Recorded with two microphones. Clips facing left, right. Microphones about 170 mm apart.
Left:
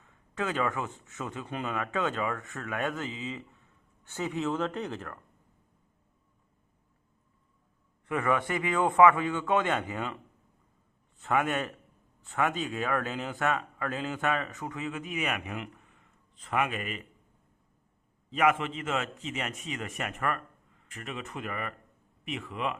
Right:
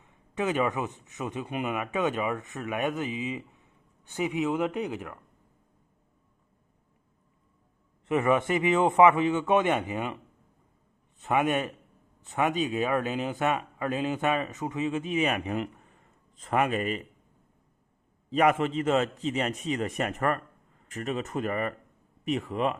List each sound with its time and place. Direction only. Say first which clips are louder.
0.0 s speech: right 4 dB; 20° right (ahead or behind)
8.0 s speech: right 4 dB; 20° right (ahead or behind)
11.2 s speech: right 3 dB; 20° right (ahead or behind); by 17.0 s 35° right (ahead or behind)
18.3 s a man's voice: right 3 dB; 35° right (ahead or behind)